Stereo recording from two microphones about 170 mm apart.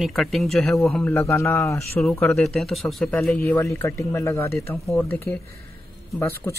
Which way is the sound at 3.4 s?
15° left (ahead or behind).